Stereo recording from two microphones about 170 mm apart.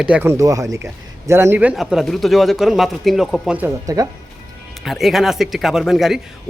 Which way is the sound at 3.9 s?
20° right (ahead or behind).